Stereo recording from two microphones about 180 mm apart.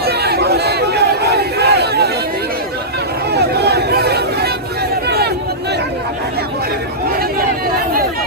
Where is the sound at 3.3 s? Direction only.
65° right (ahead or behind).